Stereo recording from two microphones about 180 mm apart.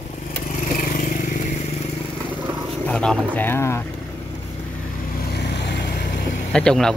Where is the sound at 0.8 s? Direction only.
50° left (ahead or behind).